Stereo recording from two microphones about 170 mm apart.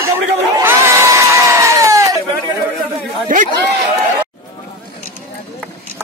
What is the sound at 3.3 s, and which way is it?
Chatter, 50° right (ahead or behind).